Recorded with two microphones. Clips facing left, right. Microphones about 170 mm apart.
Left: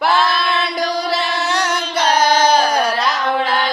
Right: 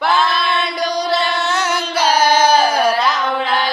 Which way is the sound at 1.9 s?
10° right (ahead or behind).